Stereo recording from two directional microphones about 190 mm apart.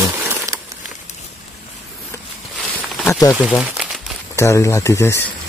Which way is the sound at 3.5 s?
5° right (ahead or behind).